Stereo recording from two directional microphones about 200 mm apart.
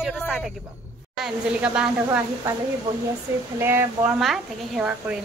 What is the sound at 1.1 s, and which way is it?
Speech, 5° right (ahead or behind).